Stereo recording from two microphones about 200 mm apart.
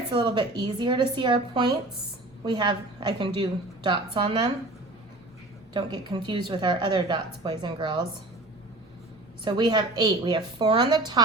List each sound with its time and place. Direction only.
0.1 s a woman's voice: 20° right (ahead or behind)
5.7 s a woman's voice: 20° right (ahead or behind)
9.4 s a woman's voice: 20° right (ahead or behind)